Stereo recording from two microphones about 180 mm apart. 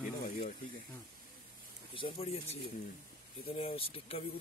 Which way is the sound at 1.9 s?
30° left (ahead or behind).